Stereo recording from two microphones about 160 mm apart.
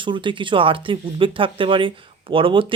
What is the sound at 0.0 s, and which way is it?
Speech, 30° right (ahead or behind).